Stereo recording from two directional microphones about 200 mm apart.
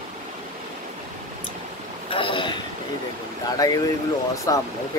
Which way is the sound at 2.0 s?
25° left (ahead or behind).